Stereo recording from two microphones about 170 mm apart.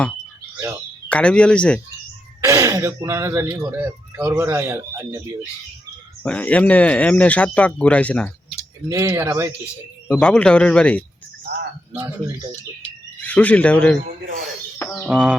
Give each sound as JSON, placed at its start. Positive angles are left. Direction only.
{"t": 1.1, "sound": "speech", "side_deg": 5}
{"t": 2.4, "sound": "speech", "side_deg": -20}
{"t": 6.2, "sound": "speech", "side_deg": 5}
{"t": 8.9, "sound": "speech", "side_deg": -15}
{"t": 10.1, "sound": "speech", "side_deg": 5}
{"t": 11.9, "sound": "speech", "side_deg": -15}
{"t": 13.2, "sound": "speech", "side_deg": 10}
{"t": 15.0, "sound": "speech", "side_deg": -5}